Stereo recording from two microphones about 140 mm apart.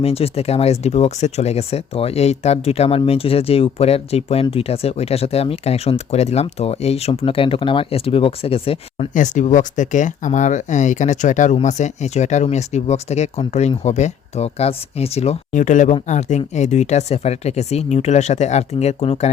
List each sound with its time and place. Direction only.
0.0 s speech: 45° left (ahead or behind)
9.1 s speech: 65° left (ahead or behind)